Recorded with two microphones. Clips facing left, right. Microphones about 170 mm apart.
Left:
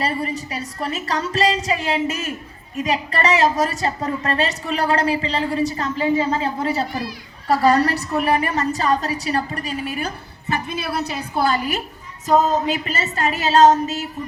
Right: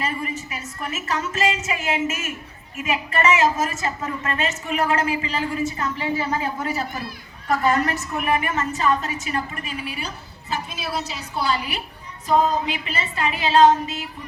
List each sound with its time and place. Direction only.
0.0 s a woman's voice: 35° left (ahead or behind)
10.5 s a woman's voice: 60° left (ahead or behind); by 14.1 s 40° left (ahead or behind)